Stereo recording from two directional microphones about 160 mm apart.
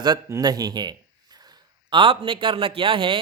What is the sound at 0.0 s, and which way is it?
A man's voice, 25° right (ahead or behind).